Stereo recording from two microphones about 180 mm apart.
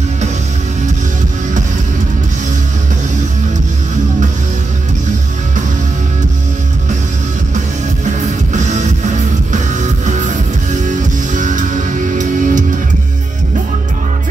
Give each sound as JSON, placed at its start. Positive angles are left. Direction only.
{"t": 8.5, "sound": "music", "side_deg": -40}